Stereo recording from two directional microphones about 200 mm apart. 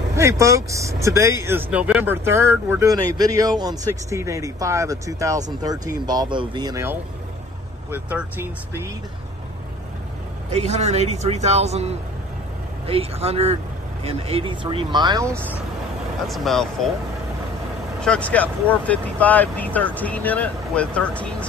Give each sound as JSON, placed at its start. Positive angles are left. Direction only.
{"t": 0.1, "sound": "speech", "side_deg": -15}
{"t": 10.5, "sound": "speech", "side_deg": -35}
{"t": 16.3, "sound": "speech", "side_deg": 0}
{"t": 18.0, "sound": "speech", "side_deg": 5}